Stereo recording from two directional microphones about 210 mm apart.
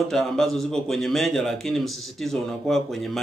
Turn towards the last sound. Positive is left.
turn(degrees=0)  # may be behind; listen again after turning